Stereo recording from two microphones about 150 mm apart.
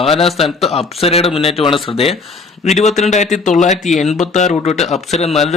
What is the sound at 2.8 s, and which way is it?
Speech, 50° left (ahead or behind).